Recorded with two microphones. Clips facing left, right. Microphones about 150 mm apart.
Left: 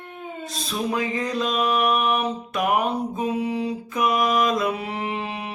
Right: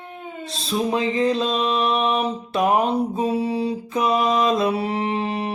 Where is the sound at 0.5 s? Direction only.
25° right (ahead or behind).